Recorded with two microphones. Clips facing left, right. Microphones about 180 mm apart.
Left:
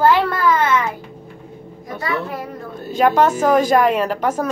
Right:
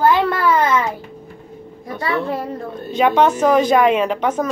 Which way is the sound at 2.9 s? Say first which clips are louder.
Even; 5° left (ahead or behind).